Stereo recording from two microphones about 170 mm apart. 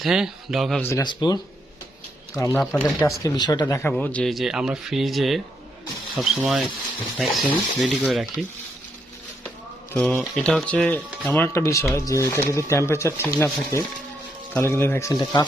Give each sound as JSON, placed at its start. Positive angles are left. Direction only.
{"t": 0.0, "sound": "speech", "side_deg": -5}
{"t": 0.8, "sound": "speech", "side_deg": 15}
{"t": 1.0, "sound": "speech", "side_deg": 25}
{"t": 2.6, "sound": "speech", "side_deg": 5}
{"t": 3.2, "sound": "speech", "side_deg": 25}
{"t": 9.9, "sound": "speech", "side_deg": 10}